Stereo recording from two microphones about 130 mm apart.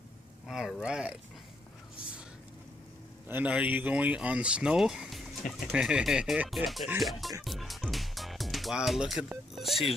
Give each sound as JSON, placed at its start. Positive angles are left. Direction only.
{"t": 0.5, "sound": "speech", "side_deg": 0}
{"t": 3.3, "sound": "speech", "side_deg": -15}
{"t": 7.4, "sound": "music", "side_deg": 0}
{"t": 9.6, "sound": "speech", "side_deg": 0}